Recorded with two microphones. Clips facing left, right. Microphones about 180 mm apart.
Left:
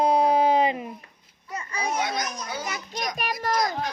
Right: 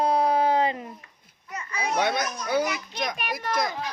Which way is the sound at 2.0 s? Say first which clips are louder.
Right 3 dB; 70° right (ahead or behind).